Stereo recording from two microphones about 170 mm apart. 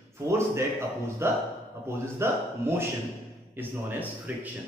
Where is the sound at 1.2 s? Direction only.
15° right (ahead or behind).